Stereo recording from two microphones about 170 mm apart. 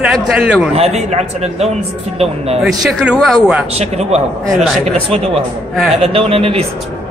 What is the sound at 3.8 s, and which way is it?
Speech, 40° right (ahead or behind).